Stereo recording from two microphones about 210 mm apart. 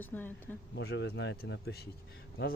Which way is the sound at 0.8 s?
55° left (ahead or behind).